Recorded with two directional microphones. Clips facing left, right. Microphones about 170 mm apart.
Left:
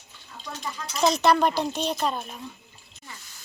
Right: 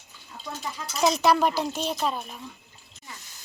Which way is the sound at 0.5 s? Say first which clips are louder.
Even; 10° right (ahead or behind).